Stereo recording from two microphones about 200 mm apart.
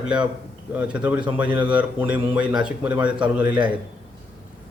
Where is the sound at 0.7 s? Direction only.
5° right (ahead or behind).